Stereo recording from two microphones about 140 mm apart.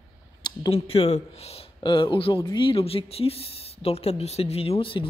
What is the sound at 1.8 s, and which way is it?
Speech, 35° left (ahead or behind).